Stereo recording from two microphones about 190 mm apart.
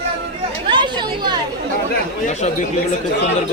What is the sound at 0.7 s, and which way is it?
Speech, 25° right (ahead or behind).